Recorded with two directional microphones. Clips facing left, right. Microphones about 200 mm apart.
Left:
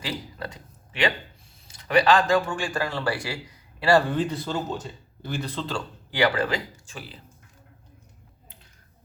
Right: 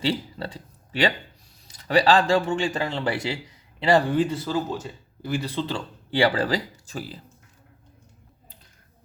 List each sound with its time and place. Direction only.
0.0 s a sound: 30° right (ahead or behind)
1.9 s a man's voice: 30° right (ahead or behind); by 5.5 s 5° right (ahead or behind)
6.1 s speech: 30° right (ahead or behind)